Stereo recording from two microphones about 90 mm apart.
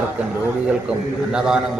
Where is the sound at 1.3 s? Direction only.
10° right (ahead or behind).